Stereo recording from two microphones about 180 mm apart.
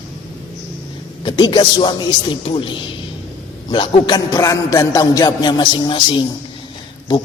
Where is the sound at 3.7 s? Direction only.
30° left (ahead or behind).